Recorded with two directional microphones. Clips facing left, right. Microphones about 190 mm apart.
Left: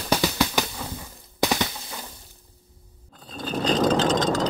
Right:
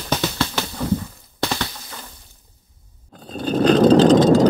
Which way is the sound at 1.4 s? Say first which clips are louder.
Left 1 dB; 15° left (ahead or behind).